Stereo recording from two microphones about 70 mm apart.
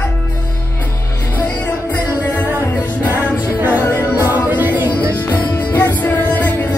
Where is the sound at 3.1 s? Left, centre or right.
Right.